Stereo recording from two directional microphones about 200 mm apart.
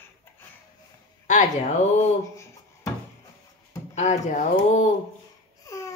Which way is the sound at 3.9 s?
35° left (ahead or behind).